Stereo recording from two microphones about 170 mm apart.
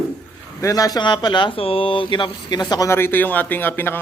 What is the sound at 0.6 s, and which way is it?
A man's voice, 20° left (ahead or behind).